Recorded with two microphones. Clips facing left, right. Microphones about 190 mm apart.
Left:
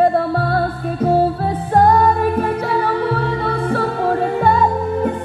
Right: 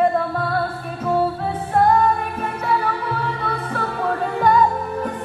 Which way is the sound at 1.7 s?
35° left (ahead or behind).